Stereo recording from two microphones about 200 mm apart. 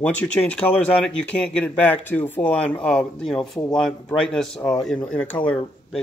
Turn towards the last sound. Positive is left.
turn(degrees=5)  # may be behind; listen again after turning